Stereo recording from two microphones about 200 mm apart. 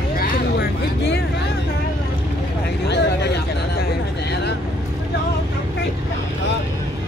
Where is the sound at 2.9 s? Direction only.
60° left (ahead or behind).